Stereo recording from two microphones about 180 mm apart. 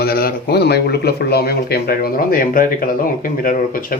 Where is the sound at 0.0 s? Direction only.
55° left (ahead or behind).